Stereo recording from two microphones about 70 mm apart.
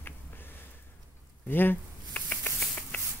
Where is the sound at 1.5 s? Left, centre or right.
Left.